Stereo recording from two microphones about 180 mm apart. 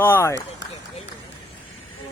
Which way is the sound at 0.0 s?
15° left (ahead or behind).